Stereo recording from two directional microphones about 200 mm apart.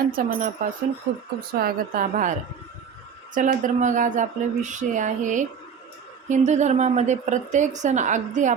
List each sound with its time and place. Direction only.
0.1 s speech: 45° right (ahead or behind)
3.3 s a woman's voice: 40° right (ahead or behind)